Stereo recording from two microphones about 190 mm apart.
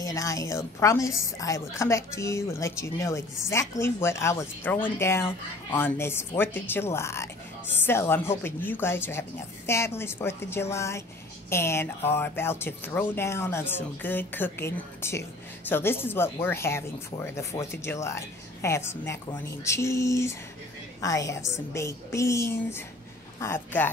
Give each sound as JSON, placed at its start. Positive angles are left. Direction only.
{"t": 0.0, "sound": "a woman's voice", "side_deg": 15}